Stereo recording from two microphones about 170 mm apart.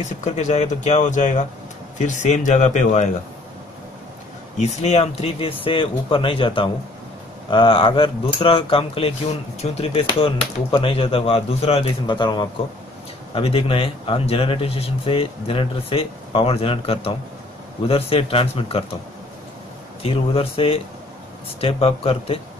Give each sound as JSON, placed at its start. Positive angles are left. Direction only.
{"t": 0.2, "sound": "speech", "side_deg": 45}
{"t": 4.6, "sound": "speech", "side_deg": 40}
{"t": 20.0, "sound": "speech", "side_deg": 35}